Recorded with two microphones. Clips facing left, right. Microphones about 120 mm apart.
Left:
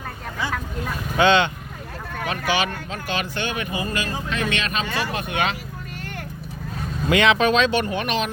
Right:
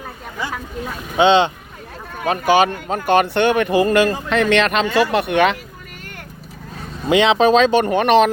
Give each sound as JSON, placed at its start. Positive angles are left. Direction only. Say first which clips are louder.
{"t": 1.1, "sound": "speech", "louder": "right 4 dB", "side_deg": -25}
{"t": 2.2, "sound": "speech", "louder": "right 9 dB", "side_deg": -40}
{"t": 7.1, "sound": "speech", "louder": "right 5 dB", "side_deg": -30}
{"t": 7.9, "sound": "speech", "louder": "right 11 dB", "side_deg": -55}